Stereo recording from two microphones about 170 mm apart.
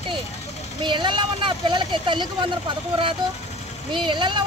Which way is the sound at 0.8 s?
30° right (ahead or behind).